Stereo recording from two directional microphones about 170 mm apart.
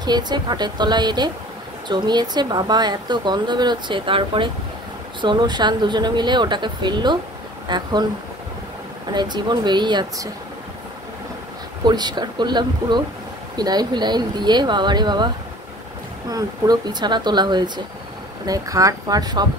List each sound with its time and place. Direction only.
0.0 s a woman's voice: 25° right (ahead or behind)
9.1 s a woman's voice: 25° right (ahead or behind)
11.8 s a woman's voice: 25° right (ahead or behind)